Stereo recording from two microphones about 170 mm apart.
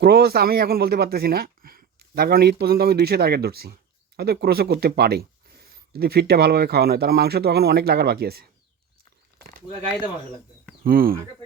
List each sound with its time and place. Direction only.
0.0 s speech: 65° right (ahead or behind)
10.8 s speech: 60° right (ahead or behind)